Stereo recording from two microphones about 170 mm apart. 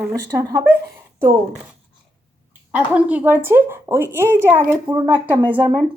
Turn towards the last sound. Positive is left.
turn(degrees=-25)  # may be behind; listen again after turning